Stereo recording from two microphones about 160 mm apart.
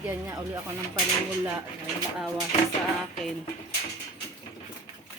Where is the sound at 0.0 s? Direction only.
15° right (ahead or behind).